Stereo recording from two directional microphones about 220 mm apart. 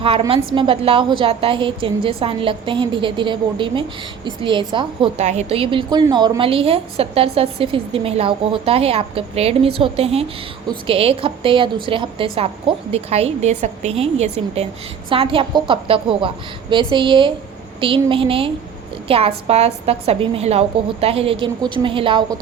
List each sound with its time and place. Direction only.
0.0 s a woman's voice: 25° right (ahead or behind)